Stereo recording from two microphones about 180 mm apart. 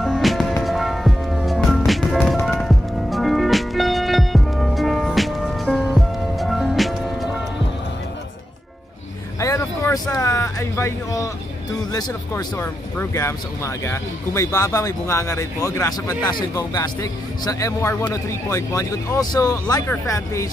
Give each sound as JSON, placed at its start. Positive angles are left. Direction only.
{"t": 0.0, "sound": "music", "side_deg": 0}
{"t": 9.4, "sound": "a sound", "side_deg": 20}
{"t": 11.9, "sound": "speech", "side_deg": 20}